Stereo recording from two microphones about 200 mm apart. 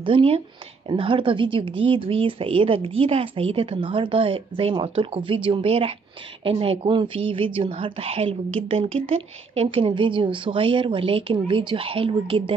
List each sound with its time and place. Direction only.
0.0 s a woman's voice: 25° right (ahead or behind)